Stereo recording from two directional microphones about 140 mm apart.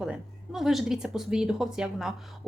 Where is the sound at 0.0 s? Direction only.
5° right (ahead or behind).